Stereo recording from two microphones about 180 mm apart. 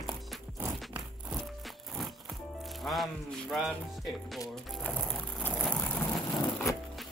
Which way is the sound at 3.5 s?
Centre (ahead or behind).